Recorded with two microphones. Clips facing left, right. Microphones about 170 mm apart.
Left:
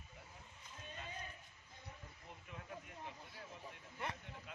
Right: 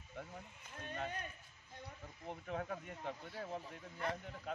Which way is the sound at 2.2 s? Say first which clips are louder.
Right 12 dB; 65° right (ahead or behind).